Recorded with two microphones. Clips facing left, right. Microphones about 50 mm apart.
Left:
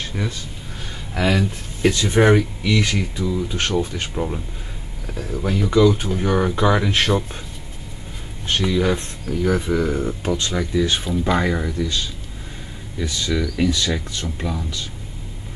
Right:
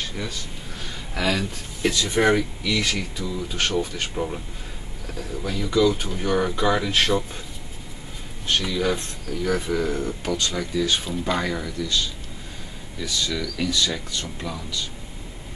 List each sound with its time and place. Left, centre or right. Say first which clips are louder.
0.0 s a sound: left 4 dB; centre
1.1 s speech: left 4 dB; centre
5.4 s speech: left 4 dB; left
8.6 s speech: left 4 dB; centre